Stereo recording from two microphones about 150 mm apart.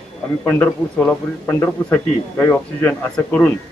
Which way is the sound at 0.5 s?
10° left (ahead or behind).